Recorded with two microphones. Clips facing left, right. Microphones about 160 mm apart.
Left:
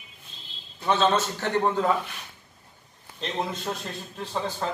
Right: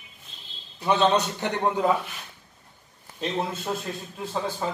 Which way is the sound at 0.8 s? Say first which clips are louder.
Right 1 dB; 15° right (ahead or behind).